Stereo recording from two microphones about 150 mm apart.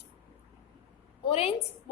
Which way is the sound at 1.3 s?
40° left (ahead or behind).